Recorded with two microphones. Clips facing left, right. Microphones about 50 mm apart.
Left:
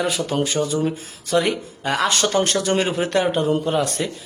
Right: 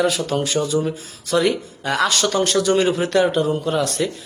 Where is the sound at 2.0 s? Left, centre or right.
Left.